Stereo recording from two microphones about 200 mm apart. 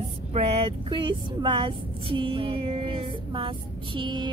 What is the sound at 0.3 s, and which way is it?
Speech, 30° right (ahead or behind).